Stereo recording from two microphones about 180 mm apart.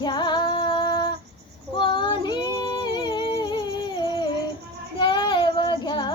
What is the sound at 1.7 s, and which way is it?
Female singing, 25° left (ahead or behind).